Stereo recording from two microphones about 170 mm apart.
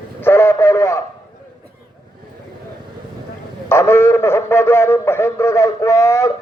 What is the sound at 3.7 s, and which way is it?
A man's voice, 15° left (ahead or behind).